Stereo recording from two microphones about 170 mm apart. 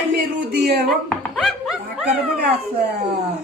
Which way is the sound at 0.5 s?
65° right (ahead or behind).